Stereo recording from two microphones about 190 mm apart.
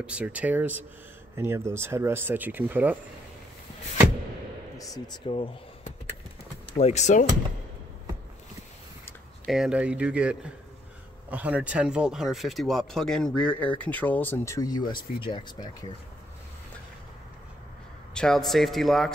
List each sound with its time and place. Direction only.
0.0 s speech: 5° right (ahead or behind)
4.7 s speech: 20° left (ahead or behind)
6.8 s speech: 35° left (ahead or behind)
9.5 s speech: 5° right (ahead or behind); by 15.7 s 25° left (ahead or behind)
18.1 s speech: 5° left (ahead or behind)